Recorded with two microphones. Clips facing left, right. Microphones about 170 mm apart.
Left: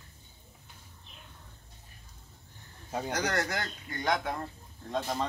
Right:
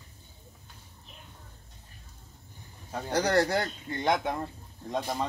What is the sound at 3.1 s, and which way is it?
Speech, 30° right (ahead or behind).